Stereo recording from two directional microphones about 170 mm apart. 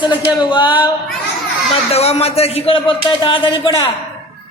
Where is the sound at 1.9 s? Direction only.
35° left (ahead or behind).